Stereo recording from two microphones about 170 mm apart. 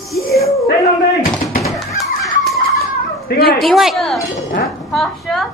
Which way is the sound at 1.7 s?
Centre (ahead or behind).